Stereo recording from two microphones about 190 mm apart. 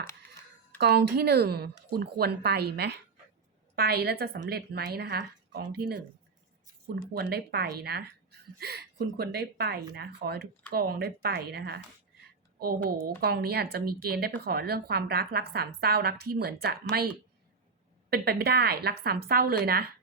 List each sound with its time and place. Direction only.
0.8 s speech: 60° right (ahead or behind)
7.1 s speech: 55° right (ahead or behind)
18.1 s speech: 55° right (ahead or behind)